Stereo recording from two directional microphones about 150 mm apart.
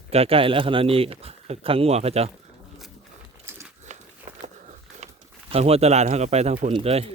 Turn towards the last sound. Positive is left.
turn(degrees=-40)  # may be behind; listen again after turning